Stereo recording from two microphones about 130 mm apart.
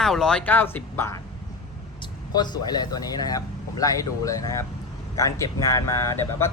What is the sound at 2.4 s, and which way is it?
Speech, 30° left (ahead or behind).